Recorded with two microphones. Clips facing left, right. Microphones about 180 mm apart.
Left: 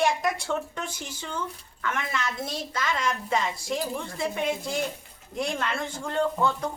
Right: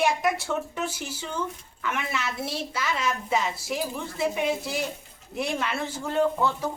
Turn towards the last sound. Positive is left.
turn(degrees=-5)  # may be behind; listen again after turning